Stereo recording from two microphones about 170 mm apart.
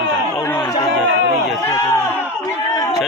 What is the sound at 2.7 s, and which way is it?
Chatter, 20° left (ahead or behind).